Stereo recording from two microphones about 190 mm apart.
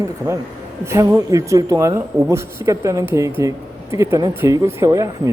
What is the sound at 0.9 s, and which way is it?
Speech, 15° right (ahead or behind).